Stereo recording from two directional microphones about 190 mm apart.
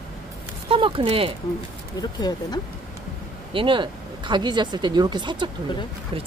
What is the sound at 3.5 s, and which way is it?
Speech, 25° right (ahead or behind).